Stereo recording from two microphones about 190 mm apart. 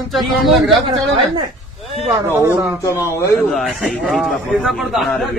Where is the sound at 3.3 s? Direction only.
Centre (ahead or behind).